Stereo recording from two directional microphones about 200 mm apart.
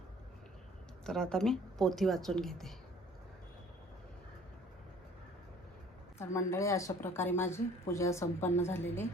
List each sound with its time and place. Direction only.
1.0 s speech: 5° left (ahead or behind)
6.1 s speech: 15° left (ahead or behind)